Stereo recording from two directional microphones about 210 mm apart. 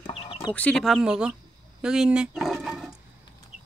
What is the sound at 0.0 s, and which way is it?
Chicken, 25° left (ahead or behind).